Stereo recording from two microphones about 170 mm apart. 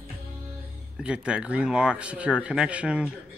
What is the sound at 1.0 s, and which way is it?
A man's voice, 5° right (ahead or behind).